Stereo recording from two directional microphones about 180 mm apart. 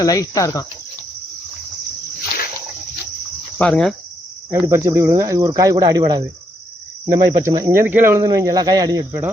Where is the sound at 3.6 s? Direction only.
5° left (ahead or behind).